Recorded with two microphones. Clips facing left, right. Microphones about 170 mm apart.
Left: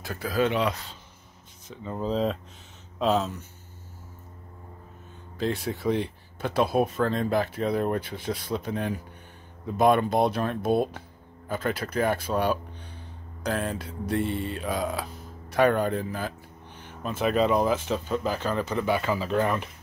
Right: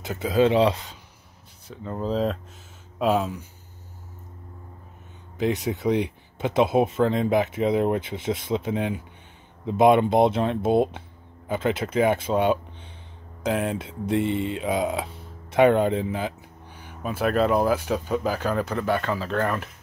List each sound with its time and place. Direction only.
0.0 s speech: 20° right (ahead or behind)
1.7 s speech: centre (ahead or behind)
5.4 s speech: 15° right (ahead or behind); by 19.7 s centre (ahead or behind)